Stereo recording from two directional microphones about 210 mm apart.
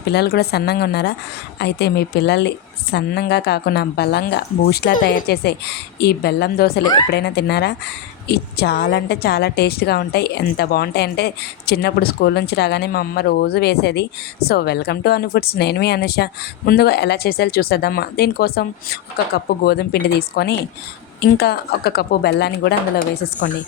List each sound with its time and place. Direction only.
0.0 s a woman's voice: 50° left (ahead or behind)